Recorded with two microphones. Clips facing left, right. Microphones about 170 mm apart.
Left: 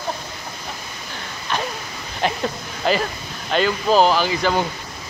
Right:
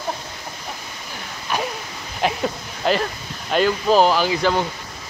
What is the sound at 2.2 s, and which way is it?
Speech, 5° right (ahead or behind).